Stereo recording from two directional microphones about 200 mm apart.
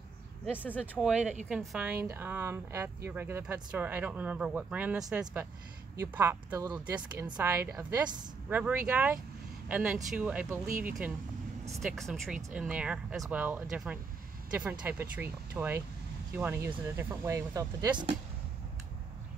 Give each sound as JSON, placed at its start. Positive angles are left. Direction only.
{"t": 0.7, "sound": "speech", "side_deg": 5}
{"t": 8.5, "sound": "speech", "side_deg": -10}
{"t": 11.8, "sound": "speech", "side_deg": 0}